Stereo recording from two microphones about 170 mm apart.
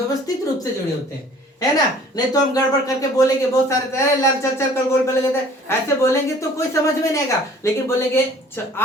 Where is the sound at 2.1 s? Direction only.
20° left (ahead or behind).